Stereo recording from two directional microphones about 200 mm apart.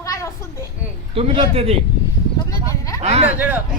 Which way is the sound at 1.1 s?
30° right (ahead or behind).